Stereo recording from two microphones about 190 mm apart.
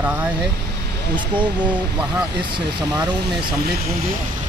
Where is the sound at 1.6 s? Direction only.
5° right (ahead or behind).